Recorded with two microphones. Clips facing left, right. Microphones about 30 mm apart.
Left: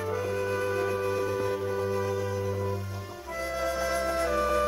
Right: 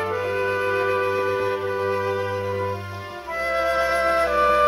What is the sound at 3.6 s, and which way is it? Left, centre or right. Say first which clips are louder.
Music: right 8 dB; right.